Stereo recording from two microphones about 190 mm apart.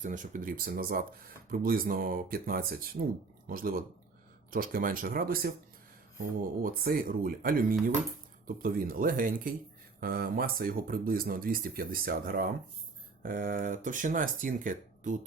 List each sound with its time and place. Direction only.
0.0 s speech: 40° right (ahead or behind)